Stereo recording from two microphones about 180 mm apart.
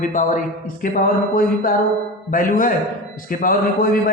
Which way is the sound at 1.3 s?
55° left (ahead or behind).